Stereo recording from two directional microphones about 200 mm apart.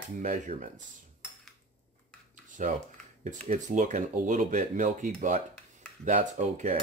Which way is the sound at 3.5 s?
40° right (ahead or behind).